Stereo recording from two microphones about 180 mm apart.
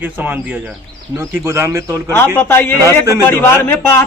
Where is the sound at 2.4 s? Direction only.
15° left (ahead or behind).